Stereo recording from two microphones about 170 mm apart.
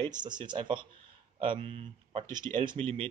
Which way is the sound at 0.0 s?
25° right (ahead or behind).